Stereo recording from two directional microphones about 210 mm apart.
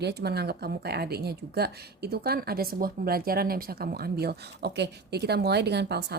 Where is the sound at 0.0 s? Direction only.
50° right (ahead or behind).